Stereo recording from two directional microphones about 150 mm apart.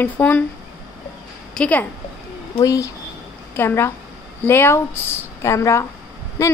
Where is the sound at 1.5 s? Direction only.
10° left (ahead or behind).